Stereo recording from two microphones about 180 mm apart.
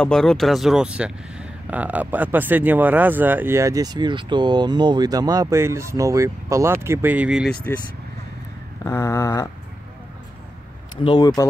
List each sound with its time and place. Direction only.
0.0 s speech: 5° left (ahead or behind)
8.8 s a sound: 15° left (ahead or behind)
11.1 s speech: 20° left (ahead or behind)